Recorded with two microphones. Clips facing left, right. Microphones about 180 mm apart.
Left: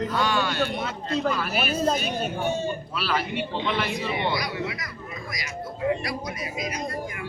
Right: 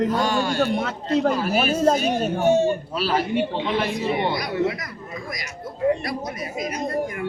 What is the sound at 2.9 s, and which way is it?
Speech, 40° right (ahead or behind).